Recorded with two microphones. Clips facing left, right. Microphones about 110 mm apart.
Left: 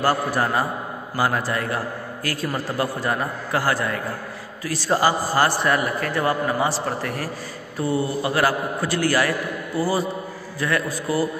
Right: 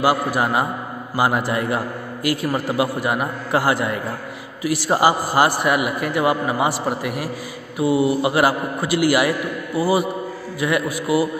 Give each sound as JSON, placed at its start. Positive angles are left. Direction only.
{"t": 0.0, "sound": "a man's voice", "side_deg": -10}